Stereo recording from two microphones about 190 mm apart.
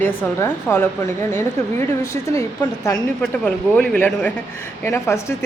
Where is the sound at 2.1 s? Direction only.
15° left (ahead or behind).